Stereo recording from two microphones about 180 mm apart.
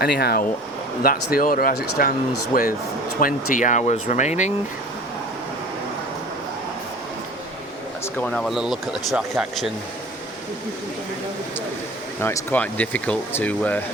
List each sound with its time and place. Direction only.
0.0 s speech: 65° left (ahead or behind); by 4.5 s 40° left (ahead or behind)
8.2 s speech: 5° left (ahead or behind)
12.2 s speech: 10° left (ahead or behind)